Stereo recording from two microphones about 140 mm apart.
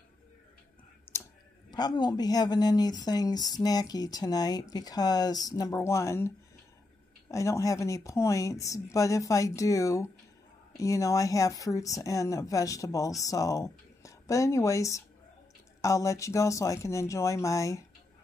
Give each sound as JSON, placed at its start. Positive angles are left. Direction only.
{"t": 1.1, "sound": "clicking", "side_deg": 15}
{"t": 1.7, "sound": "speech", "side_deg": 30}